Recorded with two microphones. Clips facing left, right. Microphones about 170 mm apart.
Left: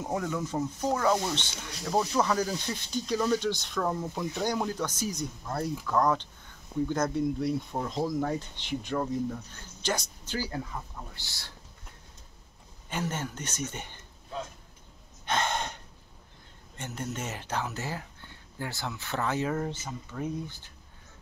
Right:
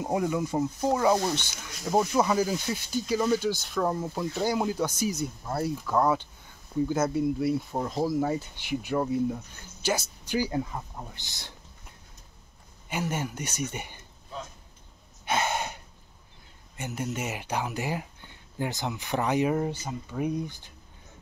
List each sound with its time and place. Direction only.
0.0 s speech: 15° right (ahead or behind)
12.9 s speech: 10° right (ahead or behind)
15.2 s gasp: 10° right (ahead or behind)
16.7 s speech: 10° right (ahead or behind)